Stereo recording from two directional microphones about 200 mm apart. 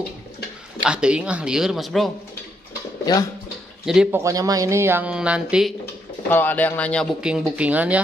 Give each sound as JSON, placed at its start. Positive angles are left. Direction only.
{"t": 0.8, "sound": "speech", "side_deg": -5}
{"t": 3.1, "sound": "speech", "side_deg": 20}
{"t": 3.8, "sound": "speech", "side_deg": -5}
{"t": 4.2, "sound": "speech", "side_deg": -15}
{"t": 6.3, "sound": "speech", "side_deg": 10}